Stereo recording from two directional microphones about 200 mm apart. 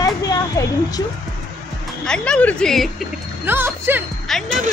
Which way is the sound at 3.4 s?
10° right (ahead or behind).